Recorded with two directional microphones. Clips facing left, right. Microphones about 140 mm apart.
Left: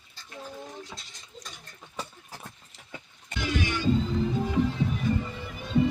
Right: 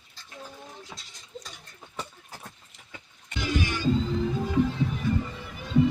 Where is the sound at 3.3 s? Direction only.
40° left (ahead or behind).